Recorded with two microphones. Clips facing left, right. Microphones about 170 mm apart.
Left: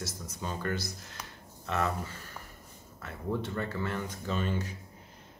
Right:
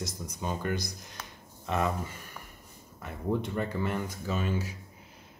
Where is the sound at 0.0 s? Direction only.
15° right (ahead or behind).